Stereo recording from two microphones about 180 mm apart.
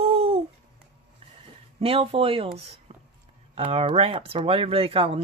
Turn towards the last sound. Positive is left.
turn(degrees=-30)  # may be behind; listen again after turning